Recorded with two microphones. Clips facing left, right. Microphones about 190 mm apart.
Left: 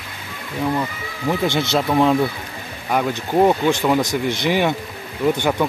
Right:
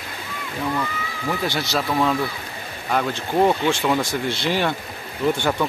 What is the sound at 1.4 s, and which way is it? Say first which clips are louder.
Speech: left 5 dB; 20° left (ahead or behind).